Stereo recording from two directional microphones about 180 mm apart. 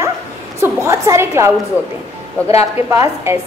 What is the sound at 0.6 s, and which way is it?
A woman's voice, 15° right (ahead or behind).